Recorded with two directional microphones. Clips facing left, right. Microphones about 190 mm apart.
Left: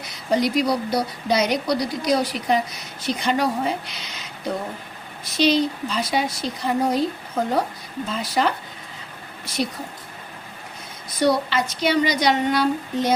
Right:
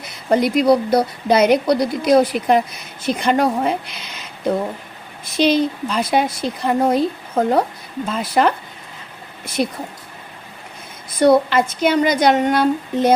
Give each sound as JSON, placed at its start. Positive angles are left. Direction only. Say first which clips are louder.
{"t": 0.1, "sound": "a woman's voice", "louder": "right 4 dB", "side_deg": -55}
{"t": 5.2, "sound": "a woman's voice", "louder": "right 3 dB", "side_deg": -55}
{"t": 11.2, "sound": "a woman's voice", "louder": "right 7 dB", "side_deg": -50}